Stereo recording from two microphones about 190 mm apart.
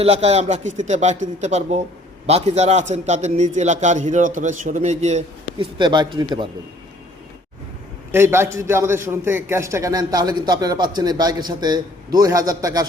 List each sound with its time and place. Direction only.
0.0 s a man's voice: 35° right (ahead or behind)
5.5 s a man's voice: 25° right (ahead or behind)
8.1 s a man's voice: 10° right (ahead or behind)